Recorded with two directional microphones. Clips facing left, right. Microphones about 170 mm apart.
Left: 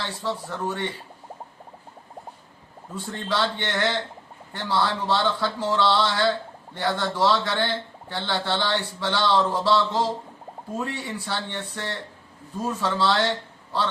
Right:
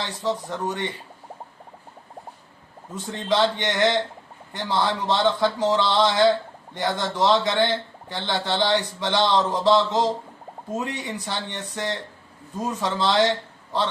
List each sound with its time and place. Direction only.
0.0 s speech: 20° right (ahead or behind)
2.9 s speech: 20° right (ahead or behind)